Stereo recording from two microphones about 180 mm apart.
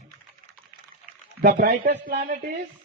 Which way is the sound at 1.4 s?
50° right (ahead or behind).